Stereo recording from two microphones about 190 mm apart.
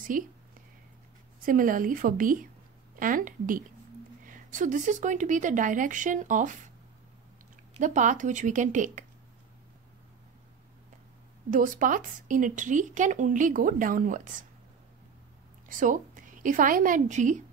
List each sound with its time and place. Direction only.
0.1 s a woman's voice: 45° right (ahead or behind)
1.4 s a woman's voice: 45° right (ahead or behind)
7.8 s a woman's voice: 40° right (ahead or behind)
11.5 s a woman's voice: 45° right (ahead or behind)
15.7 s a woman's voice: 45° right (ahead or behind)